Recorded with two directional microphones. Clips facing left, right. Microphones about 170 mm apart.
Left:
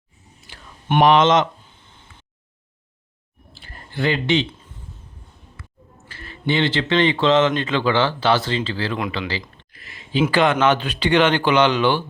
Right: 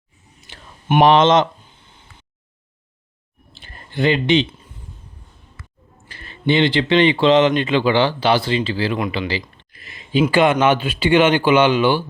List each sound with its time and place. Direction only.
0.5 s whispering: 20° right (ahead or behind)
1.0 s speech: 30° right (ahead or behind)
3.5 s a sound: 20° right (ahead or behind)
6.1 s speech: 20° right (ahead or behind)
9.8 s a sound: 15° right (ahead or behind)
10.3 s speech: 10° right (ahead or behind)